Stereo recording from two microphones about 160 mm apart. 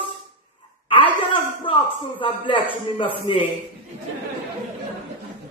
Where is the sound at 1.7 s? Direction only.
35° left (ahead or behind).